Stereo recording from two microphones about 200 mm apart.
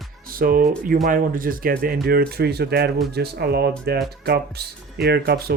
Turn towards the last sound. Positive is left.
turn(degrees=-50)  # may be behind; listen again after turning